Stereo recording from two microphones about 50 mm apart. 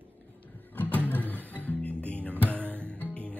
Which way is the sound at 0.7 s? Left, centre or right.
Left.